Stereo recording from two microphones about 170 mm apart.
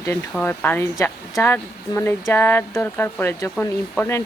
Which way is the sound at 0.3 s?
10° left (ahead or behind).